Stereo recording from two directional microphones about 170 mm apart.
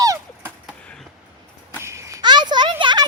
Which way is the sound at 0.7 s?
Centre (ahead or behind).